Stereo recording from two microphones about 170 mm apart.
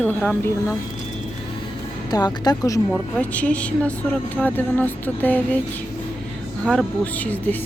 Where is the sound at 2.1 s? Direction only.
25° left (ahead or behind).